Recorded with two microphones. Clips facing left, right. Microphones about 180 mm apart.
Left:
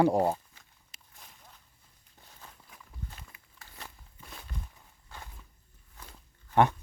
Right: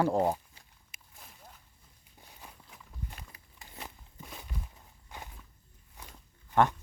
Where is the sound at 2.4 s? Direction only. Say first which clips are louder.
Right 1 dB; 15° right (ahead or behind).